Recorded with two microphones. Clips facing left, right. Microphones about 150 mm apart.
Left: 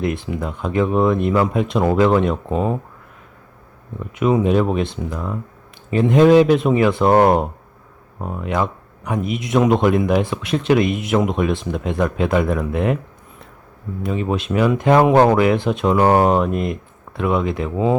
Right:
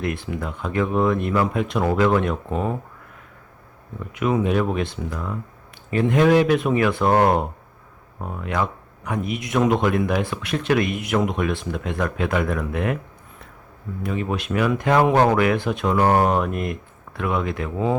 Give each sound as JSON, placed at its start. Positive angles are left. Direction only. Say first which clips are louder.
{"t": 0.0, "sound": "speech", "louder": "left 4 dB", "side_deg": 25}
{"t": 4.1, "sound": "speech", "louder": "left 4 dB", "side_deg": 25}
{"t": 14.0, "sound": "speech", "louder": "left 4 dB", "side_deg": 25}